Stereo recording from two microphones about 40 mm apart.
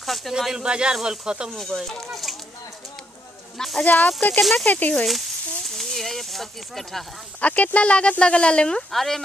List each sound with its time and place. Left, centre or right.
0.0 s speech: centre
0.6 s speech: right
2.0 s speech: centre
3.5 s speech: centre
3.8 s speech: left
4.4 s speech: centre
4.6 s speech: left
5.0 s speech: centre
7.3 s speech: left
8.9 s speech: centre